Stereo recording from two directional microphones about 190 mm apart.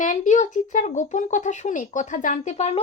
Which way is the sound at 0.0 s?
40° left (ahead or behind).